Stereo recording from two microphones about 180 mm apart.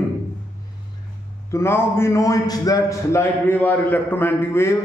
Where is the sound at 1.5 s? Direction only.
15° left (ahead or behind).